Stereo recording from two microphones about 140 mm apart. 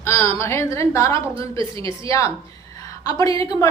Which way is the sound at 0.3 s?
20° left (ahead or behind).